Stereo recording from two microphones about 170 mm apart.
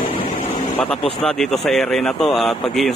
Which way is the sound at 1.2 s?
Centre (ahead or behind).